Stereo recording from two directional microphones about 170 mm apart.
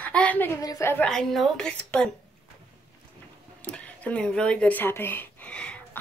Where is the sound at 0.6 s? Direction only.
20° left (ahead or behind).